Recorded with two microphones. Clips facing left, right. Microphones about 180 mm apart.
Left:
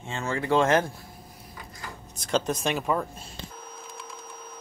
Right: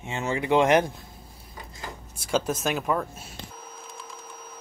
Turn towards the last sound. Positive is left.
turn(degrees=0)  # may be behind; listen again after turning